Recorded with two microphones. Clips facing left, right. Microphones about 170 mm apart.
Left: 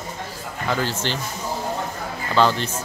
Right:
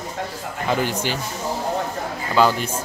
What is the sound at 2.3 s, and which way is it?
Speech, 10° right (ahead or behind).